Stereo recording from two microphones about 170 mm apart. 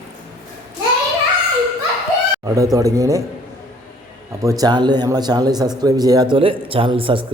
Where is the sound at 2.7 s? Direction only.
20° right (ahead or behind).